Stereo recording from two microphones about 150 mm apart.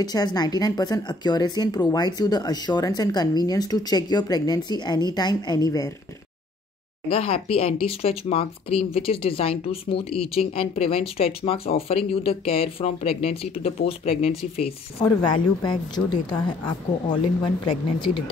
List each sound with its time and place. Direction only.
0.0 s a woman's voice: 25° left (ahead or behind)
7.1 s speech: 40° left (ahead or behind)
17.6 s speech: 35° left (ahead or behind)